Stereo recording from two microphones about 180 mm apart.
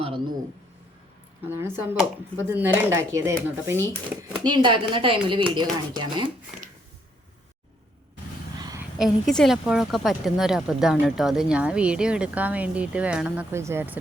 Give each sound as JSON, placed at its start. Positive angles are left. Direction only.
{"t": 1.5, "sound": "speech", "side_deg": -15}
{"t": 4.4, "sound": "a woman's voice", "side_deg": -25}
{"t": 8.5, "sound": "a sound", "side_deg": -20}
{"t": 8.8, "sound": "a woman's voice", "side_deg": 0}